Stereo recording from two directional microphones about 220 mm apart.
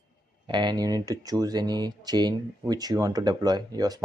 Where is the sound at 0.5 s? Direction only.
20° right (ahead or behind).